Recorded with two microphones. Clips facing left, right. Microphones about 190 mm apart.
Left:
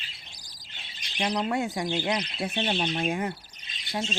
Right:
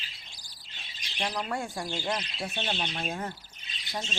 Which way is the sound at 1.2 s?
20° left (ahead or behind).